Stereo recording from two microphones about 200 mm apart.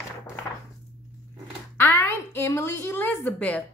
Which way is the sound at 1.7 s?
10° left (ahead or behind).